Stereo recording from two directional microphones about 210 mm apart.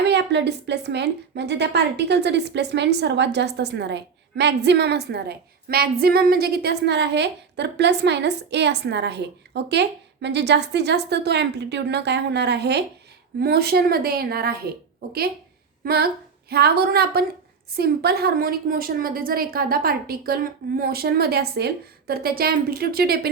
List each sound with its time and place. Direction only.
0.0 s a woman's voice: 55° right (ahead or behind)
15.8 s a woman's voice: 50° right (ahead or behind)